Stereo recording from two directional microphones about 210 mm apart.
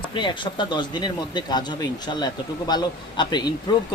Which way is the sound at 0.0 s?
20° left (ahead or behind).